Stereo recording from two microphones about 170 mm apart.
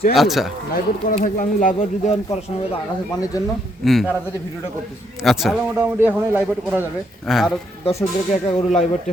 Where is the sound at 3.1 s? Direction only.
20° left (ahead or behind).